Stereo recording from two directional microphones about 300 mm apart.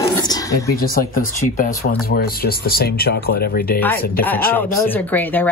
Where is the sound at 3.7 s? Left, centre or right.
Centre.